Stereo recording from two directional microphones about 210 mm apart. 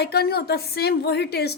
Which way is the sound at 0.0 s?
50° left (ahead or behind).